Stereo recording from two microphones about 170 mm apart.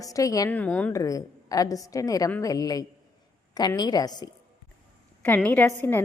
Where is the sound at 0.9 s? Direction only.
20° left (ahead or behind).